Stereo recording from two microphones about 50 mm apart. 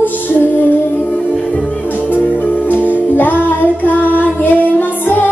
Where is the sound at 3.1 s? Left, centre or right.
Left.